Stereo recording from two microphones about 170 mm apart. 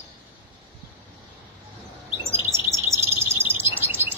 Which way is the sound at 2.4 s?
15° right (ahead or behind).